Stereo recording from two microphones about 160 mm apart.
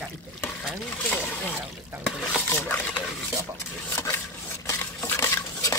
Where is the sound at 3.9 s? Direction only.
15° left (ahead or behind).